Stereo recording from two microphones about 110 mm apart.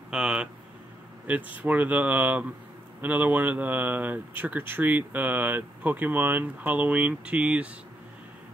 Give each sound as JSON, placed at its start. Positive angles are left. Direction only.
{"t": 0.1, "sound": "speech", "side_deg": -5}